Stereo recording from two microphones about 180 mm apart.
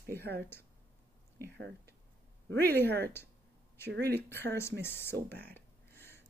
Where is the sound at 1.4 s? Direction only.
70° right (ahead or behind).